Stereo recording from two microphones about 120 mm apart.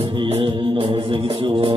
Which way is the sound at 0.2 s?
50° right (ahead or behind).